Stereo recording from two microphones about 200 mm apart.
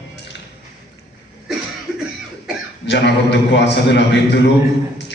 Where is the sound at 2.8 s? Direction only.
60° left (ahead or behind).